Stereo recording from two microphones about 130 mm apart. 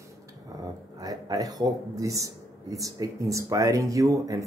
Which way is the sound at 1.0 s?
30° right (ahead or behind).